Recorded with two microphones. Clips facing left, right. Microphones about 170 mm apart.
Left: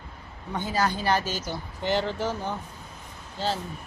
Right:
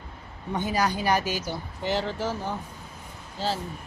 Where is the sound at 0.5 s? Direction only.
15° right (ahead or behind).